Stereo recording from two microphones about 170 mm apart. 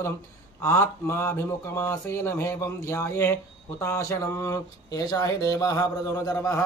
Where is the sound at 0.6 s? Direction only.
15° left (ahead or behind).